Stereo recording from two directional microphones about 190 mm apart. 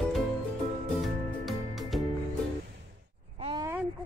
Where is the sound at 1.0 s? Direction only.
Centre (ahead or behind).